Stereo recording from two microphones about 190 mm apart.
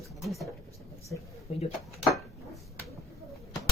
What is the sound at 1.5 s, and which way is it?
Speech, 35° left (ahead or behind).